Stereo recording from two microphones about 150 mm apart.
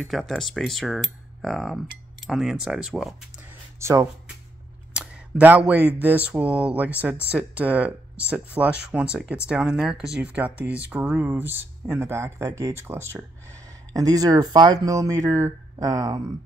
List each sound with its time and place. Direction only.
0.0 s speech: centre (ahead or behind)
3.8 s speech: 20° right (ahead or behind)
4.9 s a sound: 10° right (ahead or behind)
5.9 s speech: 10° right (ahead or behind); by 16.2 s 25° right (ahead or behind)